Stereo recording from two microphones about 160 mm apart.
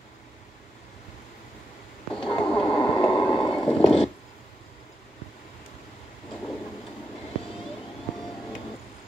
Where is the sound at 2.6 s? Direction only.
30° left (ahead or behind).